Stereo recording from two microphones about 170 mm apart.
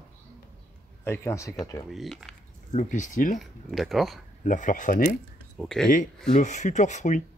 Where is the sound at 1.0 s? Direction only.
15° left (ahead or behind).